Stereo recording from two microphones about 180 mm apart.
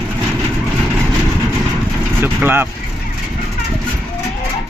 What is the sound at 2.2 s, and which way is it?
Speech, 10° right (ahead or behind).